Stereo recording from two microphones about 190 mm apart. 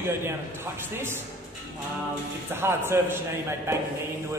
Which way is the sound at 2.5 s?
10° right (ahead or behind).